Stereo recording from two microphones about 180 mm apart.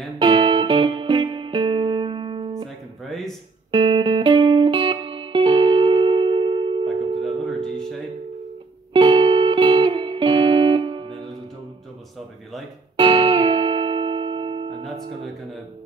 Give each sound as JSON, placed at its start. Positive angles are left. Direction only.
{"t": 0.2, "sound": "music", "side_deg": -25}
{"t": 3.1, "sound": "a sound", "side_deg": 0}
{"t": 3.7, "sound": "music", "side_deg": -25}
{"t": 7.2, "sound": "music", "side_deg": 0}
{"t": 8.9, "sound": "music", "side_deg": -25}
{"t": 12.9, "sound": "music", "side_deg": -25}